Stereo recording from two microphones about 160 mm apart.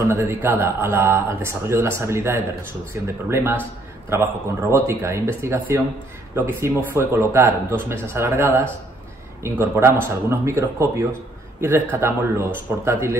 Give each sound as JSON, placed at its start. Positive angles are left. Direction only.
{"t": 0.0, "sound": "speech", "side_deg": -15}